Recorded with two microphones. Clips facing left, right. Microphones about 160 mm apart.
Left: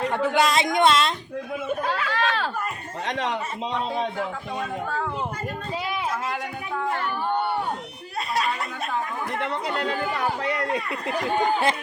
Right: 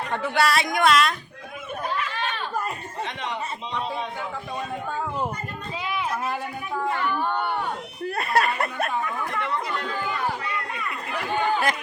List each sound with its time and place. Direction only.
0.1 s speech: 15° left (ahead or behind)
1.8 s children playing: 90° left
3.1 s a man's voice: 90° left
8.1 s speech: 60° right (ahead or behind)
9.4 s speech: 70° left (ahead or behind); by 10.8 s 85° left
10.8 s speech: 40° left (ahead or behind)